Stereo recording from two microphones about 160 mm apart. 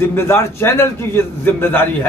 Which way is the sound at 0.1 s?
15° left (ahead or behind).